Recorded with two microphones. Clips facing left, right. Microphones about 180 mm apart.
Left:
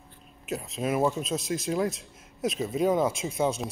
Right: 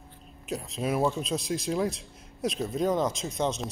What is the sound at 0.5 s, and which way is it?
Speech, centre (ahead or behind).